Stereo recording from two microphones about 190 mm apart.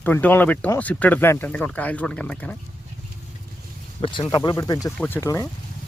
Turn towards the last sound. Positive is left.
turn(degrees=15)  # may be behind; listen again after turning